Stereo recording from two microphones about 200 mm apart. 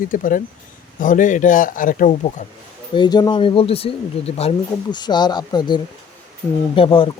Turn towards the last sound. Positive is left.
turn(degrees=25)  # may be behind; listen again after turning